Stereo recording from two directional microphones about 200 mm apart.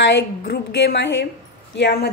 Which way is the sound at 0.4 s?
55° left (ahead or behind).